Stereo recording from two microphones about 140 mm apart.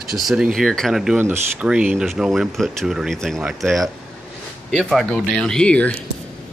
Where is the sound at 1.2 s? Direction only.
15° right (ahead or behind); by 5.9 s 10° left (ahead or behind).